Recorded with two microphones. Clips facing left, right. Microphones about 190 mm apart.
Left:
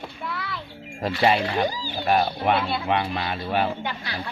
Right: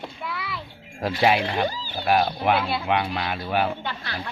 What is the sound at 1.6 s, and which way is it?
Speech, 10° left (ahead or behind).